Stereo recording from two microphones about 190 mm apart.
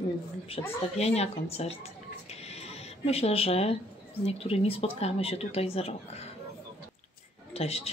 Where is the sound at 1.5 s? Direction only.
35° left (ahead or behind).